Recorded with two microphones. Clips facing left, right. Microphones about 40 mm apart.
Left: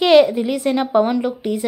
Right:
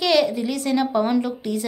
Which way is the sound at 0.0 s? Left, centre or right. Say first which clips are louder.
Left 7 dB; left.